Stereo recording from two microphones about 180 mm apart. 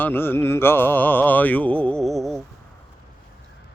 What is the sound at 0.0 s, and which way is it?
Mantra, 10° left (ahead or behind).